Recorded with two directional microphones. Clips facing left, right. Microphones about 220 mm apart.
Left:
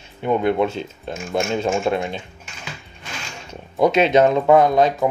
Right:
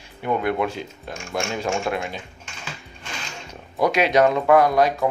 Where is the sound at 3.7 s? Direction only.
25° left (ahead or behind).